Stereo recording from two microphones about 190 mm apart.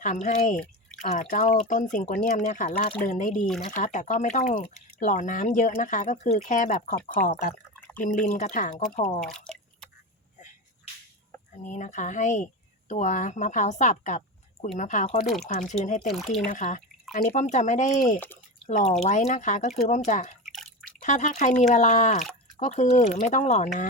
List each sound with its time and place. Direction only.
0.0 s speech: 40° left (ahead or behind)
3.3 s speech: centre (ahead or behind)
3.7 s speech: 40° left (ahead or behind)
9.2 s drip: 5° left (ahead or behind)
11.6 s speech: 40° left (ahead or behind)
16.0 s speech: centre (ahead or behind)
16.5 s speech: 40° left (ahead or behind)
20.4 s drip: centre (ahead or behind)
21.0 s speech: 40° left (ahead or behind)